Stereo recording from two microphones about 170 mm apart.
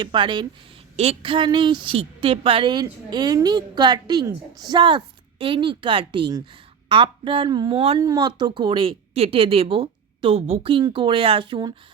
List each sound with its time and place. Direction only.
0.0 s a woman's voice: 25° right (ahead or behind)
7.9 s speech: 20° right (ahead or behind)